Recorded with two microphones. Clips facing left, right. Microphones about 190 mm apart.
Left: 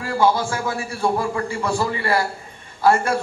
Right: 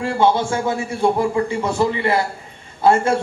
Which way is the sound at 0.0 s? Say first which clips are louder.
Right 2 dB; 25° right (ahead or behind).